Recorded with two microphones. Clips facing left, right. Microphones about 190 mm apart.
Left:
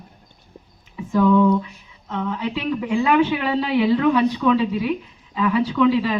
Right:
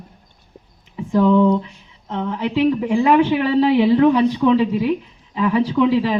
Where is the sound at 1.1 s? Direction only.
25° right (ahead or behind).